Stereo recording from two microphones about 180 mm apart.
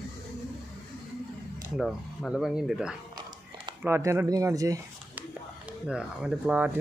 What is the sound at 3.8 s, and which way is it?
A child's voice, 15° right (ahead or behind).